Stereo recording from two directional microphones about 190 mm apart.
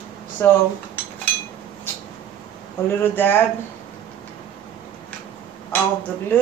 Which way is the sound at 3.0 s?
10° left (ahead or behind).